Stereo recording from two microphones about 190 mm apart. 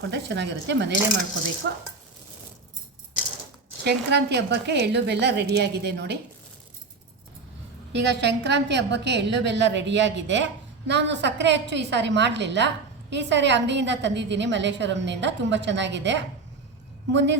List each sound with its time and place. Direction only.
0.1 s a woman's voice: 65° right (ahead or behind)
3.8 s a woman's voice: 60° right (ahead or behind)
7.9 s a woman's voice: 65° right (ahead or behind)